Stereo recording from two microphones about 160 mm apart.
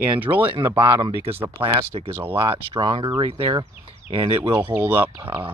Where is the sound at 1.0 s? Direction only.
35° right (ahead or behind).